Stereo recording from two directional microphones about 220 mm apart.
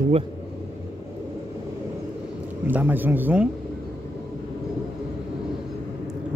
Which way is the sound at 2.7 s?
10° right (ahead or behind).